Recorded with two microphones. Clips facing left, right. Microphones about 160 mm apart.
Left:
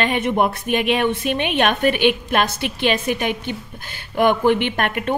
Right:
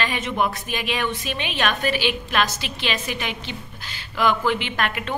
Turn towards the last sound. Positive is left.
turn(degrees=50)  # may be behind; listen again after turning